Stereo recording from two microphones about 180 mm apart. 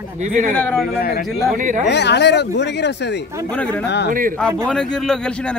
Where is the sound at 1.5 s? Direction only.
45° right (ahead or behind).